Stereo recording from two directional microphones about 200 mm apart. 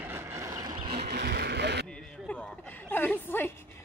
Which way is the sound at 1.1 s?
55° right (ahead or behind).